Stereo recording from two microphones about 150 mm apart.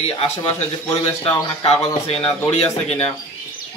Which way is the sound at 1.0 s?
40° left (ahead or behind).